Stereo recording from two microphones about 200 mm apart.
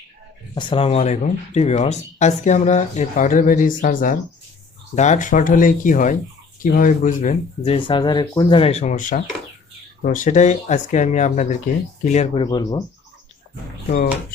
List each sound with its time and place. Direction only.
0.5 s speech: 25° left (ahead or behind)